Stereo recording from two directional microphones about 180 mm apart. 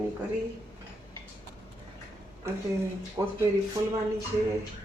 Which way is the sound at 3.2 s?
20° right (ahead or behind).